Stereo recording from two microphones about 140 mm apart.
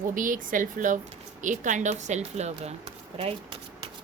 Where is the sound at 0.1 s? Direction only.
75° right (ahead or behind); by 2.7 s 55° right (ahead or behind).